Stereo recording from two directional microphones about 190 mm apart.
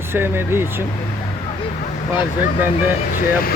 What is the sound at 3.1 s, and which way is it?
Speech, 50° left (ahead or behind).